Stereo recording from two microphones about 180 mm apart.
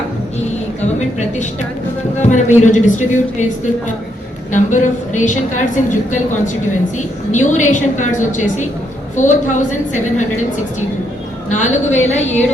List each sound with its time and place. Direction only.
2.1 s a woman's voice: 40° left (ahead or behind)
4.5 s a woman's voice: 45° left (ahead or behind)
11.4 s a woman's voice: 40° left (ahead or behind)